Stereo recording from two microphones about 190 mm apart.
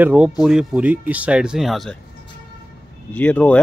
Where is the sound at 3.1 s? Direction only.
5° left (ahead or behind).